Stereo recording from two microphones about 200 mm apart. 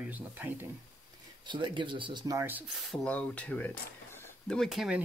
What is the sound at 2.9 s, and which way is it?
Speech, 5° left (ahead or behind).